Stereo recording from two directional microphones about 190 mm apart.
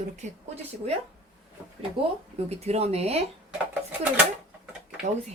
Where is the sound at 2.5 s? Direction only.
35° right (ahead or behind).